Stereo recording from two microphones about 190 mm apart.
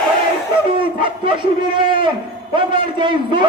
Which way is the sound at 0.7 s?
25° right (ahead or behind).